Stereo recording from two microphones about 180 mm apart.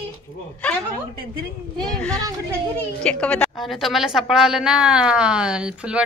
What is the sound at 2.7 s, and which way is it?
A woman's voice, 5° left (ahead or behind).